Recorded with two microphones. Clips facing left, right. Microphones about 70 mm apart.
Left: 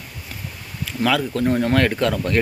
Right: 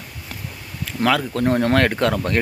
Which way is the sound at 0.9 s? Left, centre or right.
Right.